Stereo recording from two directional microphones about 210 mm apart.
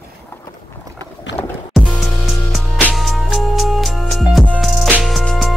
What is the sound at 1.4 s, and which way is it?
Music, 10° left (ahead or behind).